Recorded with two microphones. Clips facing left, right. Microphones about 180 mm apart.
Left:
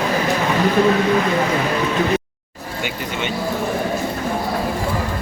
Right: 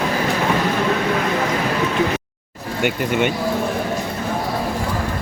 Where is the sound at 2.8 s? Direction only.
55° right (ahead or behind).